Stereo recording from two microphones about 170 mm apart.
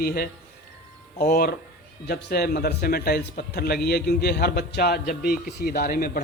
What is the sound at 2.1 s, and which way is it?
A man's voice, 75° left (ahead or behind).